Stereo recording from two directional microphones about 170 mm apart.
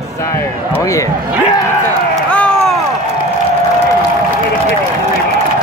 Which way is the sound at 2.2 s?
5° left (ahead or behind).